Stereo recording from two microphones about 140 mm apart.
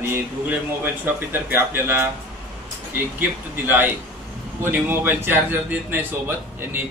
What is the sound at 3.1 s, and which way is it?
Speech, 15° right (ahead or behind).